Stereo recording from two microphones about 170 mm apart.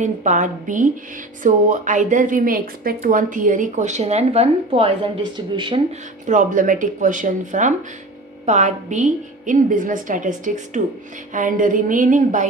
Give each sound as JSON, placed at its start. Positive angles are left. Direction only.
{"t": 0.0, "sound": "a woman's voice", "side_deg": -45}
{"t": 6.2, "sound": "a woman's voice", "side_deg": -45}